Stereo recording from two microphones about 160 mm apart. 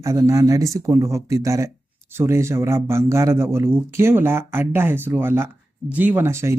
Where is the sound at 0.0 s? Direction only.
20° right (ahead or behind).